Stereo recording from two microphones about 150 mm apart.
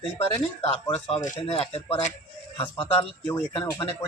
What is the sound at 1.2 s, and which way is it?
Speech, 55° left (ahead or behind).